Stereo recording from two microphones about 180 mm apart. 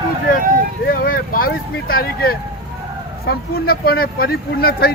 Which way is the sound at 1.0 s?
50° left (ahead or behind).